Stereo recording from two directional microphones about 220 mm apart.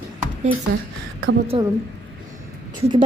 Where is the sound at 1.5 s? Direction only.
25° right (ahead or behind).